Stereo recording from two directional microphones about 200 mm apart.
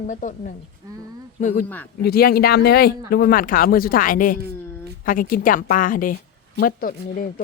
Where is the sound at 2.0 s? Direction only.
50° left (ahead or behind).